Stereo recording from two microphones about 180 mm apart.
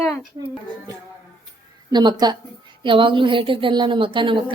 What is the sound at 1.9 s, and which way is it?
A woman's voice, 25° right (ahead or behind).